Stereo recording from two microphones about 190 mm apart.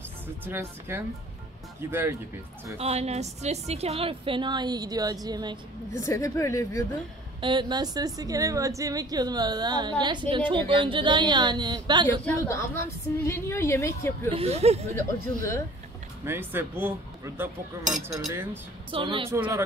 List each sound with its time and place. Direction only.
0.5 s speech: 10° right (ahead or behind)
2.8 s a woman's voice: 35° right (ahead or behind)
5.9 s a woman's voice: 15° left (ahead or behind)
7.3 s a woman's voice: 25° right (ahead or behind)
12.3 s a woman's voice: 15° left (ahead or behind)
14.3 s speech: 35° right (ahead or behind)
15.0 s a woman's voice: 15° left (ahead or behind)
16.3 s speech: 10° right (ahead or behind)
18.9 s a woman's voice: 25° right (ahead or behind)